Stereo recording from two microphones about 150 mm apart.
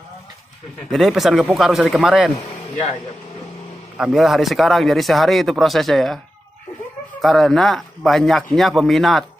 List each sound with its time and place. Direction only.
0.9 s speech: centre (ahead or behind)
4.0 s speech: centre (ahead or behind)
7.2 s speech: centre (ahead or behind)